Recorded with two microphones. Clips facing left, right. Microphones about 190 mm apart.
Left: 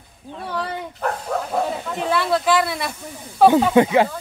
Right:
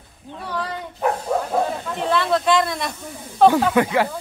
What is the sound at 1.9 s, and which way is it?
Speech, 5° left (ahead or behind).